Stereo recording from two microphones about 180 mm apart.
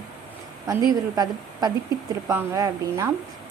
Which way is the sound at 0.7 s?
20° right (ahead or behind).